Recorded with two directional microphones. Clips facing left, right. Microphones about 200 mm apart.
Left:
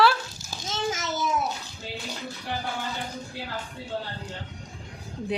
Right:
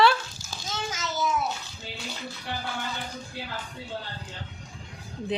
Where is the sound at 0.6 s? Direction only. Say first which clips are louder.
Left 5 dB; 20° left (ahead or behind).